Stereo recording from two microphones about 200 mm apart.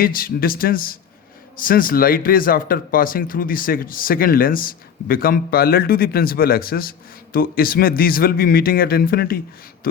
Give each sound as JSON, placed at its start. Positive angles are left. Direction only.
{"t": 0.0, "sound": "speech", "side_deg": 45}